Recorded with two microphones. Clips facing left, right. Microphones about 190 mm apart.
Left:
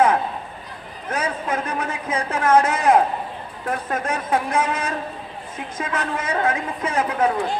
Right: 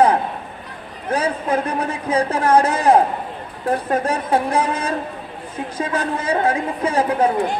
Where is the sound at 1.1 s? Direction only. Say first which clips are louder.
Right 5 dB; 35° right (ahead or behind).